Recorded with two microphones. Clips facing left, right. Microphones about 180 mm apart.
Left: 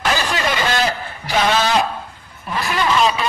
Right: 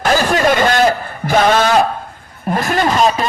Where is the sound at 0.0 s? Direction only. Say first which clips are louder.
Right 7 dB; 50° right (ahead or behind).